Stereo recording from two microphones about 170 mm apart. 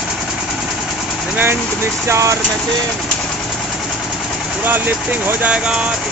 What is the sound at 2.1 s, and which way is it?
Speech, 15° right (ahead or behind).